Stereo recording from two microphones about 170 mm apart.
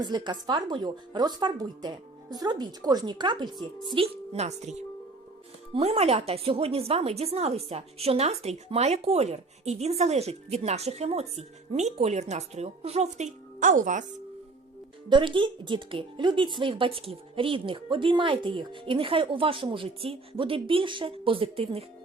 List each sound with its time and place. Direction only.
0.0 s speech: 25° right (ahead or behind)
5.7 s speech: 35° right (ahead or behind)
15.1 s speech: 30° right (ahead or behind)